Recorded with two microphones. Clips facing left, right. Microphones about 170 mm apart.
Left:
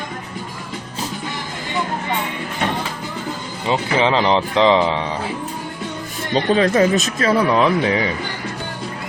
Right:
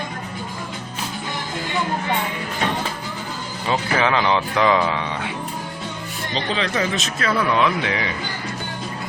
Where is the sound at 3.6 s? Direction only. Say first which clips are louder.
Left 3 dB; 25° left (ahead or behind).